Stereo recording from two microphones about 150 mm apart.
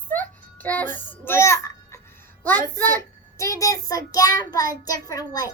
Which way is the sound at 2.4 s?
10° left (ahead or behind).